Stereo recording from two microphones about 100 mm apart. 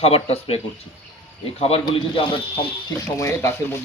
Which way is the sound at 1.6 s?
80° left.